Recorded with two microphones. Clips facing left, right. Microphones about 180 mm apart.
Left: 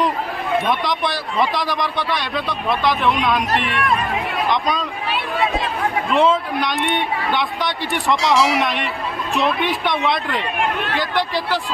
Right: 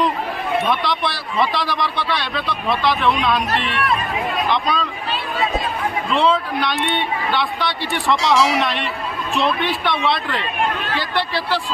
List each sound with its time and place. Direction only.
0.8 s a man's voice: 15° left (ahead or behind)
6.1 s a man's voice: 15° left (ahead or behind)
8.2 s speech: centre (ahead or behind)
8.6 s a man's voice: 15° left (ahead or behind)